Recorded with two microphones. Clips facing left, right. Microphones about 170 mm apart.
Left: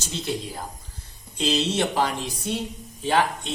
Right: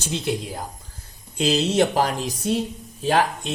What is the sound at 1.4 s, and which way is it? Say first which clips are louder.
Speech: right 4 dB; 45° right (ahead or behind).